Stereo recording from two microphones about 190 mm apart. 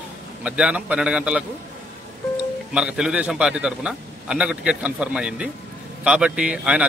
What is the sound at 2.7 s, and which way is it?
A man's voice, 5° right (ahead or behind).